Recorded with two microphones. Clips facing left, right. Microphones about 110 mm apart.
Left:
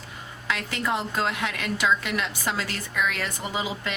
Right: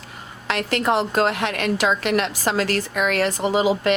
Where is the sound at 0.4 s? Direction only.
65° right (ahead or behind).